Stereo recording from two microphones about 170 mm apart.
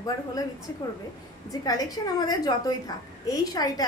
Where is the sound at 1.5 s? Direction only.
20° left (ahead or behind).